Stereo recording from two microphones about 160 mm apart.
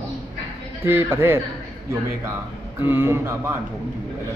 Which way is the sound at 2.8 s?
15° right (ahead or behind).